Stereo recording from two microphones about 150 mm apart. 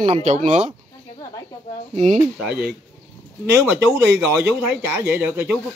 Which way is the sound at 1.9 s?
55° right (ahead or behind).